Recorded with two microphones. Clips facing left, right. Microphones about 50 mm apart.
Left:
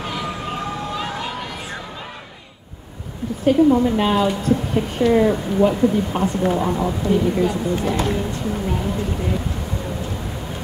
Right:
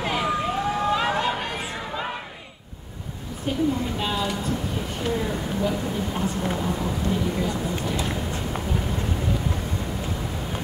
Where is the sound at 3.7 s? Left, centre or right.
Left.